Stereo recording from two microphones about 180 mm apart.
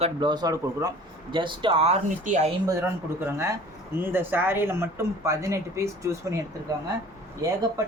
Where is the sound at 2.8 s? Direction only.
15° right (ahead or behind).